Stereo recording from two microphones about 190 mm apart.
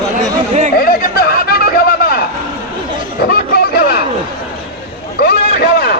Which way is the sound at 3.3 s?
55° left (ahead or behind).